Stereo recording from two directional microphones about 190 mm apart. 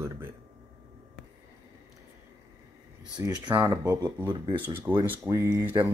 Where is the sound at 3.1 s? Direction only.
20° right (ahead or behind).